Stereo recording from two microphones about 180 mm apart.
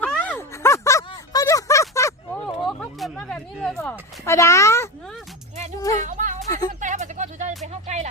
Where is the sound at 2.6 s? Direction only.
5° left (ahead or behind).